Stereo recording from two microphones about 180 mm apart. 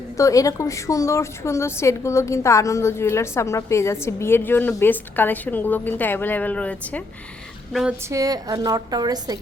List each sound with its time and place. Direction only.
0.2 s a woman's voice: 20° left (ahead or behind)
7.7 s a sound: centre (ahead or behind)
8.1 s a woman's voice: 20° right (ahead or behind)